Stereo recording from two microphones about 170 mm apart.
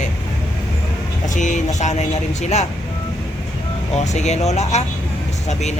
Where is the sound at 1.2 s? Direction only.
45° left (ahead or behind).